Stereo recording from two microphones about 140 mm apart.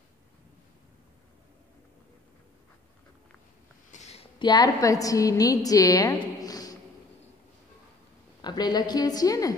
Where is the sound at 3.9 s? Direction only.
50° left (ahead or behind).